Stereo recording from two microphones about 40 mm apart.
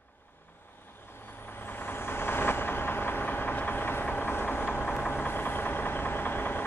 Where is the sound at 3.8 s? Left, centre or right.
Left.